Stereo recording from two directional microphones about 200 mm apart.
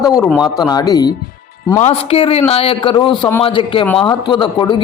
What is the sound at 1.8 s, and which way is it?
A man's voice, 30° left (ahead or behind).